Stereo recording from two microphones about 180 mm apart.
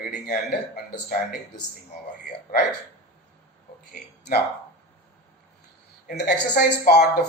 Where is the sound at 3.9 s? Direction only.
55° left (ahead or behind).